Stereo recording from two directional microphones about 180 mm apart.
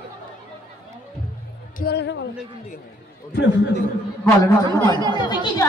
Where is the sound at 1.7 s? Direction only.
60° left (ahead or behind).